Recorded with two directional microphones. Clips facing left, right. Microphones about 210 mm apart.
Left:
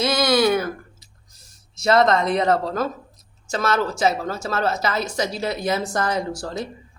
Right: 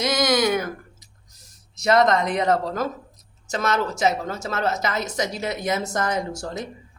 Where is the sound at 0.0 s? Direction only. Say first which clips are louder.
Left 2 dB; 15° right (ahead or behind).